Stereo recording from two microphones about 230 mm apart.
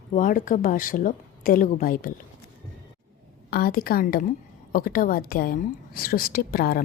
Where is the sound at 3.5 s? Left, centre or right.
Left.